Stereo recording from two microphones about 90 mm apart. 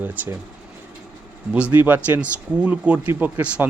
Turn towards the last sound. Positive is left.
turn(degrees=-15)  # may be behind; listen again after turning